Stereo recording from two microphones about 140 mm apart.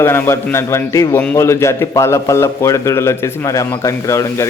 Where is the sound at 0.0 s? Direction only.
20° left (ahead or behind).